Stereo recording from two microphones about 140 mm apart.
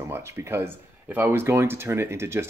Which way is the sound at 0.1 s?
20° right (ahead or behind).